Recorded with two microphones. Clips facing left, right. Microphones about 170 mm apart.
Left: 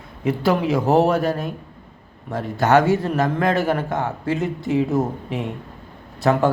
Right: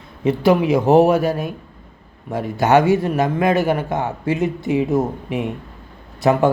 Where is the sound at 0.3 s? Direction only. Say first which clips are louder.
Right 4 dB; 15° right (ahead or behind).